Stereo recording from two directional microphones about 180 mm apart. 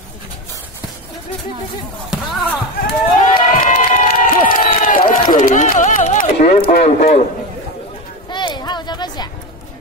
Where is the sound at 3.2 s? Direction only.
50° left (ahead or behind).